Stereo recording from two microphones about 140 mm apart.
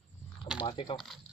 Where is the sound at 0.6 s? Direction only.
35° left (ahead or behind).